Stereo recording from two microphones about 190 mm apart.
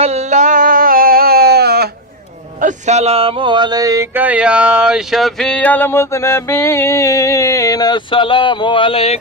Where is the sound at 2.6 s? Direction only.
35° right (ahead or behind); by 9.2 s 30° left (ahead or behind).